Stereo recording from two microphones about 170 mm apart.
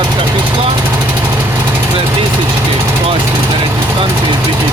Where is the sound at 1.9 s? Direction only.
30° right (ahead or behind).